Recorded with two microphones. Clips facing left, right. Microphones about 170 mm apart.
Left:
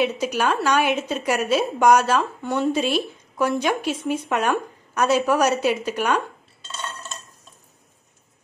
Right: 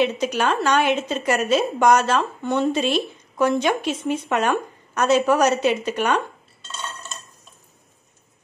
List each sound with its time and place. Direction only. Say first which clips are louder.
0.0 s speech: right 1 dB; 5° left (ahead or behind)